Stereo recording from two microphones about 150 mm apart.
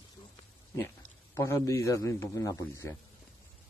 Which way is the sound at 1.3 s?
20° left (ahead or behind).